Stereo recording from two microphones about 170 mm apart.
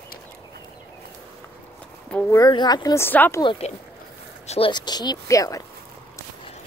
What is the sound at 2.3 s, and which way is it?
Speech, 20° left (ahead or behind).